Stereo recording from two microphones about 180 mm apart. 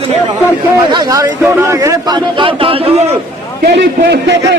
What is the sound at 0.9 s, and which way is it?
A man's voice, 20° right (ahead or behind).